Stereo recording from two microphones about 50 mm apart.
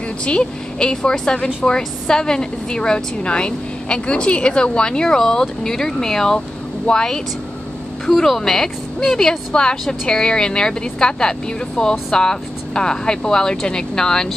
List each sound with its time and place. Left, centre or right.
0.2 s a woman's voice: centre